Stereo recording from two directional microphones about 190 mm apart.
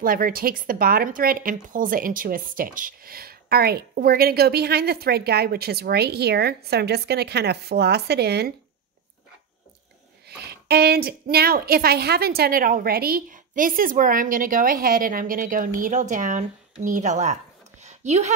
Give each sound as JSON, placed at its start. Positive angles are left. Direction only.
{"t": 0.0, "sound": "speech", "side_deg": -50}
{"t": 10.2, "sound": "a woman's voice", "side_deg": -60}
{"t": 17.8, "sound": "a sound", "side_deg": -35}